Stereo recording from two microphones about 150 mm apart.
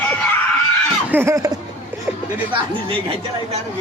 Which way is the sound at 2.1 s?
10° right (ahead or behind).